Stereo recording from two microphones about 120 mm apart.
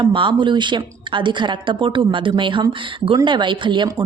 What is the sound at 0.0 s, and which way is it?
A woman's voice, 45° right (ahead or behind).